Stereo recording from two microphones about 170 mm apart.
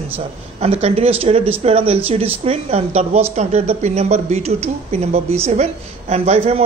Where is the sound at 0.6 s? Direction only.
40° right (ahead or behind).